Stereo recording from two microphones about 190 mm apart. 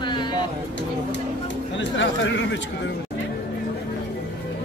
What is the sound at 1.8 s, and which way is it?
Chatter, 75° left (ahead or behind).